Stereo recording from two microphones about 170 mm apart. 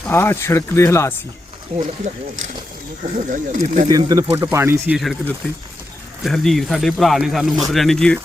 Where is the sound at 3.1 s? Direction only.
50° right (ahead or behind).